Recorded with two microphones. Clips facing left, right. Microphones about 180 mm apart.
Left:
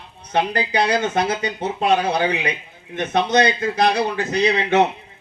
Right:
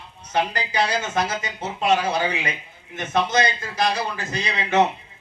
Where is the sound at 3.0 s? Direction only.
60° left (ahead or behind).